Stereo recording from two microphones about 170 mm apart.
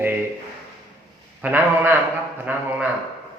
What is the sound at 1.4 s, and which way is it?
A man's voice, 10° right (ahead or behind).